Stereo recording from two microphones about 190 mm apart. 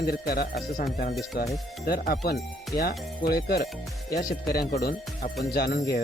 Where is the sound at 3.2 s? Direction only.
55° left (ahead or behind).